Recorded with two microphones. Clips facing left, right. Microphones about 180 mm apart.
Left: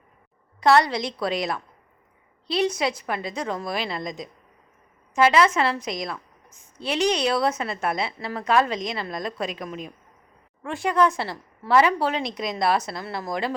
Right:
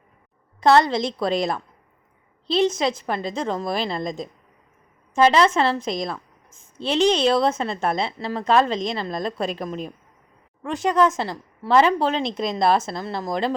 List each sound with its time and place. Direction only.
0.6 s a woman's voice: 25° right (ahead or behind)
2.5 s a woman's voice: 25° right (ahead or behind)
5.5 s a woman's voice: 30° right (ahead or behind)
10.6 s a woman's voice: 20° right (ahead or behind)